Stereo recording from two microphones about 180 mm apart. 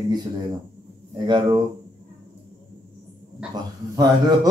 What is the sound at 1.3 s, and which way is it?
Speech, 25° right (ahead or behind).